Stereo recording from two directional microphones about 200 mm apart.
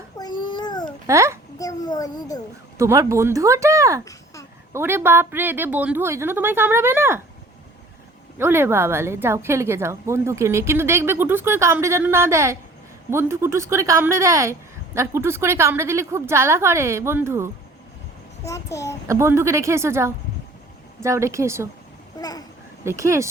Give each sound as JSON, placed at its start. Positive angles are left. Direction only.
{"t": 0.2, "sound": "a sound", "side_deg": 20}
{"t": 1.0, "sound": "a child's voice", "side_deg": -15}
{"t": 1.5, "sound": "a sound", "side_deg": 20}
{"t": 2.7, "sound": "a woman's voice", "side_deg": -15}
{"t": 8.4, "sound": "a woman's voice", "side_deg": -10}
{"t": 18.4, "sound": "a child's voice", "side_deg": 15}
{"t": 19.0, "sound": "a woman's voice", "side_deg": -15}
{"t": 22.2, "sound": "speech", "side_deg": 20}
{"t": 22.8, "sound": "a woman's voice", "side_deg": -15}